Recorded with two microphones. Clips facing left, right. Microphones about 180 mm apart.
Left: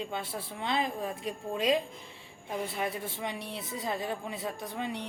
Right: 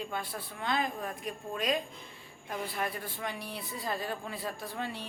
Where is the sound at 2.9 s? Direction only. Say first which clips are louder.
Left 3 dB; centre (ahead or behind).